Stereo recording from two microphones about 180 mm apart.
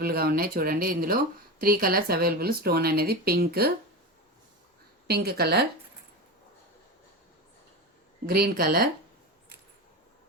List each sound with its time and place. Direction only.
0.0 s speech: 60° right (ahead or behind)
5.0 s speech: 60° right (ahead or behind)
8.3 s speech: 55° right (ahead or behind)